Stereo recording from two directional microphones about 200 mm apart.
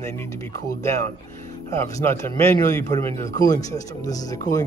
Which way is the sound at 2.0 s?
10° left (ahead or behind).